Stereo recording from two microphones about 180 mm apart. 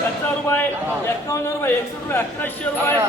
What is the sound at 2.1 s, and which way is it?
Speech, 10° left (ahead or behind).